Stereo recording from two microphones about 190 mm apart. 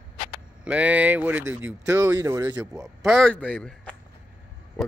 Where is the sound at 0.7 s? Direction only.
5° right (ahead or behind).